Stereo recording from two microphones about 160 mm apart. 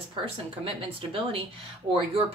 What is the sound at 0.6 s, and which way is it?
Speech, 35° right (ahead or behind).